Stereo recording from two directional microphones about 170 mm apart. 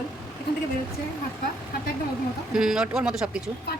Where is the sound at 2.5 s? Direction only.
5° right (ahead or behind).